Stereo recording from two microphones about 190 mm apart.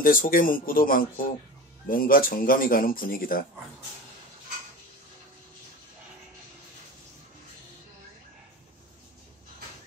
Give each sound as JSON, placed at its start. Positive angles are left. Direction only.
{"t": 0.0, "sound": "speech", "side_deg": 45}